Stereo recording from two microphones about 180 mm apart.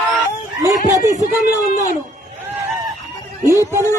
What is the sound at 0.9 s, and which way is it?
A man's voice, 45° right (ahead or behind).